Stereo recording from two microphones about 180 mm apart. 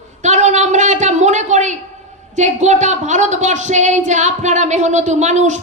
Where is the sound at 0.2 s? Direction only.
40° right (ahead or behind).